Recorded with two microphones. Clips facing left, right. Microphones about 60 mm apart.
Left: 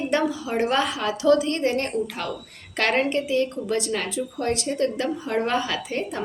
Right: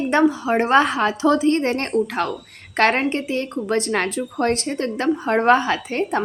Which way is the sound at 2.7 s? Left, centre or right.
Right.